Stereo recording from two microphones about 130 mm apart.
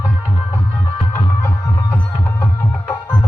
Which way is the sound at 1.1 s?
20° left (ahead or behind).